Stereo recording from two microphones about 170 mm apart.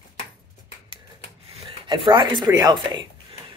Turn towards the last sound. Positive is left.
turn(degrees=-25)  # may be behind; listen again after turning